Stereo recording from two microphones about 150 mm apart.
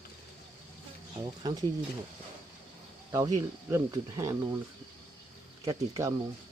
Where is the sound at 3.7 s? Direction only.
20° right (ahead or behind).